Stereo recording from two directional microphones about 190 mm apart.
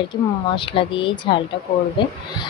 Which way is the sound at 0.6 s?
25° left (ahead or behind).